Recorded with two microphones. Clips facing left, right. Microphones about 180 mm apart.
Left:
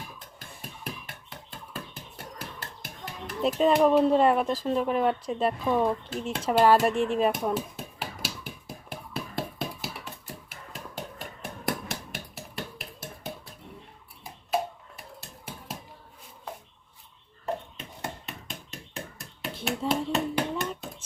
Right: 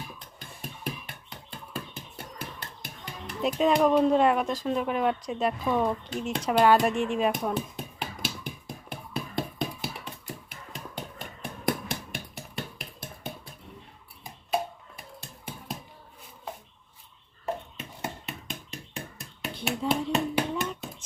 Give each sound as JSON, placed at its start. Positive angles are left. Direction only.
{"t": 1.0, "sound": "hands", "side_deg": 0}
{"t": 11.6, "sound": "finger snapping", "side_deg": 5}
{"t": 12.8, "sound": "a sound", "side_deg": 0}
{"t": 14.5, "sound": "finger snapping", "side_deg": 0}
{"t": 17.4, "sound": "a sound", "side_deg": 0}
{"t": 18.9, "sound": "hands", "side_deg": 0}